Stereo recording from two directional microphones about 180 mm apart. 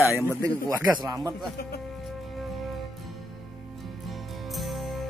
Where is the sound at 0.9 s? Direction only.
20° right (ahead or behind).